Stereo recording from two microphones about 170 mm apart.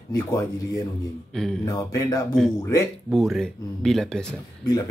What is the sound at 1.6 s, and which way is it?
Speech, 20° left (ahead or behind).